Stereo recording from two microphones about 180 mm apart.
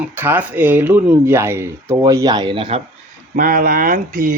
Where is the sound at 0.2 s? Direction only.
10° right (ahead or behind); by 2.8 s 30° right (ahead or behind).